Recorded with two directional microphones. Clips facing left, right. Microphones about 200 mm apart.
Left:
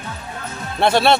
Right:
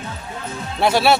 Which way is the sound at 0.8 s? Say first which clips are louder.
Left 1 dB; 5° right (ahead or behind).